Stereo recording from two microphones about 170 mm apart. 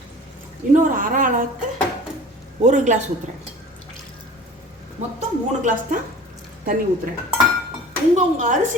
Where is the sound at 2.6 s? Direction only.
45° right (ahead or behind).